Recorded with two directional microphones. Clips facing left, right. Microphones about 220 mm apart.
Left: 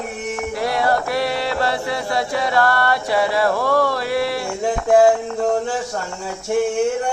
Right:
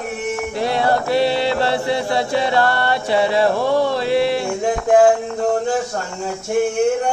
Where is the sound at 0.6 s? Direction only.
25° right (ahead or behind).